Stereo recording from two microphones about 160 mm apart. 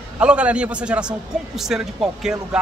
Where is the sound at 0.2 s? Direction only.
5° right (ahead or behind).